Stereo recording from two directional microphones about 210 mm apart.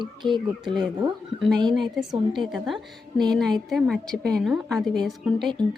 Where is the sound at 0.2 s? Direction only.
20° right (ahead or behind).